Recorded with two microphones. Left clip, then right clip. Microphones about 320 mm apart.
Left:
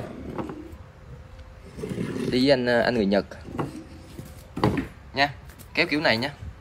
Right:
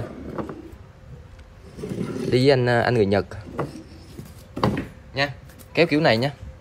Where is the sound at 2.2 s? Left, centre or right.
Centre.